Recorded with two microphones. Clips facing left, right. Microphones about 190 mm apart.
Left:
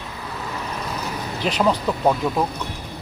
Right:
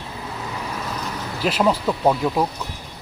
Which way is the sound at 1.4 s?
5° right (ahead or behind).